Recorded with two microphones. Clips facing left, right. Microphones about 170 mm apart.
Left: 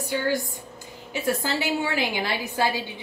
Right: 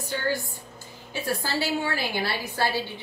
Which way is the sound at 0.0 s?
15° left (ahead or behind).